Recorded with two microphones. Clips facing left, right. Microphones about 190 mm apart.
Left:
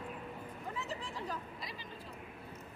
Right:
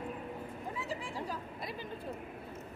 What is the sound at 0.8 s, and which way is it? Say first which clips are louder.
Vehicle: right 3 dB; 10° right (ahead or behind).